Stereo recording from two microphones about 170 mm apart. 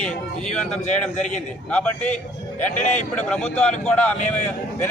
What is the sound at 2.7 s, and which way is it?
Speech, 45° left (ahead or behind).